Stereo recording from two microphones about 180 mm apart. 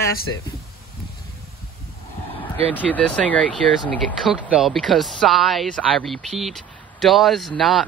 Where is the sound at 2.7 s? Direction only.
5° left (ahead or behind).